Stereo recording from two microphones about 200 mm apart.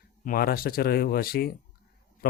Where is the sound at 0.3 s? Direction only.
50° left (ahead or behind).